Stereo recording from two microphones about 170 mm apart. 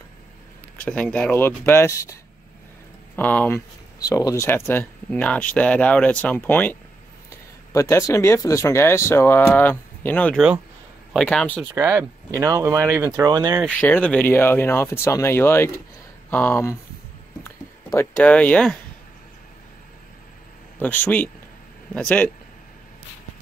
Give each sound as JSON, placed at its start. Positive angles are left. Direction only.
{"t": 0.8, "sound": "speech", "side_deg": 5}
{"t": 3.2, "sound": "speech", "side_deg": 10}
{"t": 11.7, "sound": "speech", "side_deg": -20}
{"t": 13.7, "sound": "speech", "side_deg": 10}
{"t": 17.4, "sound": "a sound", "side_deg": 15}
{"t": 20.8, "sound": "speech", "side_deg": 10}